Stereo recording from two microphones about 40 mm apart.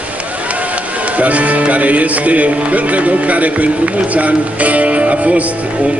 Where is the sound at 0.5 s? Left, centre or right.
Right.